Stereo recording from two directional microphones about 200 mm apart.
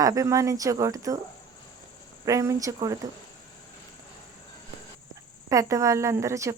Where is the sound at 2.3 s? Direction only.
15° right (ahead or behind).